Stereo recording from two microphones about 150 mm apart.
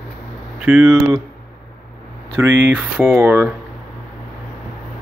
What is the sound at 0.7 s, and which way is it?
Speech, 10° right (ahead or behind).